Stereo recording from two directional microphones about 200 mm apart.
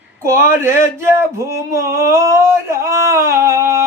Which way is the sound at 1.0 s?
15° right (ahead or behind).